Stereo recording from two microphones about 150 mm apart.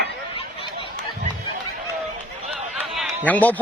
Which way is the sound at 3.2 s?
10° left (ahead or behind).